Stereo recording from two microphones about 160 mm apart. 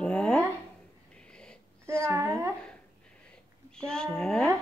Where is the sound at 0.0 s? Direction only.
5° left (ahead or behind).